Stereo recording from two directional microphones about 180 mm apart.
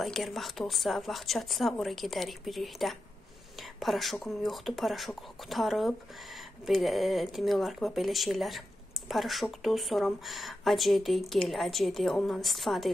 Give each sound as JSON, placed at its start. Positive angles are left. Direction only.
{"t": 0.0, "sound": "speech", "side_deg": 0}